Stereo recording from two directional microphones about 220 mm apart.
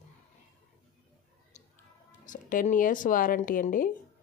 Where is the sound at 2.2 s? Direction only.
35° left (ahead or behind).